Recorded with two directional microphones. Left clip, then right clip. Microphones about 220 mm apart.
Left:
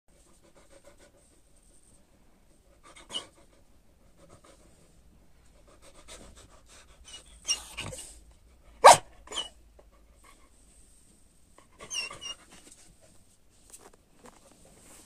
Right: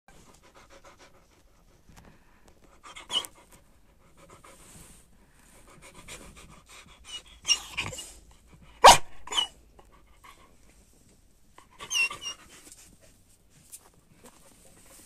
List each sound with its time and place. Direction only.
0.7 s pant: 25° right (ahead or behind)
2.8 s dog: 30° right (ahead or behind)
5.7 s dog: 30° right (ahead or behind)
11.5 s dog: 25° right (ahead or behind)